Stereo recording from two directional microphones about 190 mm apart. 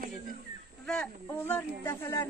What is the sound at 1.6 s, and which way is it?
Speech, 15° left (ahead or behind).